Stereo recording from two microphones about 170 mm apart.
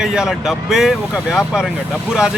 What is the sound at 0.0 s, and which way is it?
Speech, 5° right (ahead or behind).